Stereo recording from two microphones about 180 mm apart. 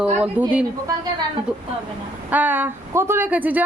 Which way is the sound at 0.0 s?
10° right (ahead or behind).